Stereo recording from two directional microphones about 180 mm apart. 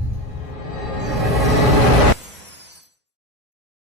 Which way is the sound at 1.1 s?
Centre (ahead or behind).